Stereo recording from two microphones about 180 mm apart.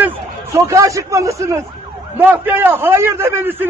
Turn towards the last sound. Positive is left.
turn(degrees=-10)  # may be behind; listen again after turning